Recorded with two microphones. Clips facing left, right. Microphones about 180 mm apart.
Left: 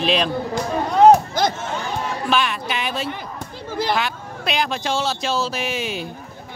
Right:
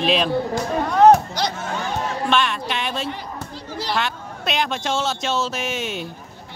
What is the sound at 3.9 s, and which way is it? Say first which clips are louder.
Speech: even; centre (ahead or behind).